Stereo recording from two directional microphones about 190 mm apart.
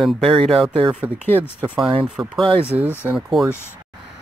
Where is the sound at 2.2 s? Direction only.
15° right (ahead or behind).